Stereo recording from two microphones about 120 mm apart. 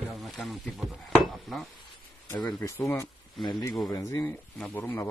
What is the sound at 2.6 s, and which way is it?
Speech, 25° left (ahead or behind).